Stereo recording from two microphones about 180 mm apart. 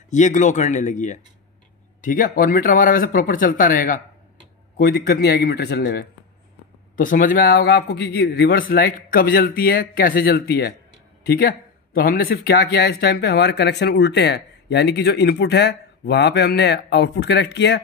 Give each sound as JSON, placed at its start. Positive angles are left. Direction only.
{"t": 0.1, "sound": "speech", "side_deg": 40}
{"t": 4.7, "sound": "a man's voice", "side_deg": 65}
{"t": 7.0, "sound": "a man's voice", "side_deg": 50}